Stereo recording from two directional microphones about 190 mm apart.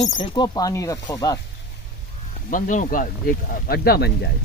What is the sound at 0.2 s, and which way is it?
Speech, 25° left (ahead or behind).